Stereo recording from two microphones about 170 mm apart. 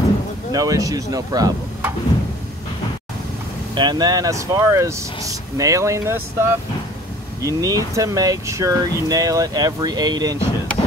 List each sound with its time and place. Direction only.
0.5 s speech: 20° right (ahead or behind)
3.7 s speech: 25° right (ahead or behind)